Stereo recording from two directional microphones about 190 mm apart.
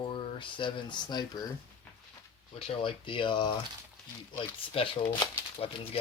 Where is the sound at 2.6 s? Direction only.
30° left (ahead or behind).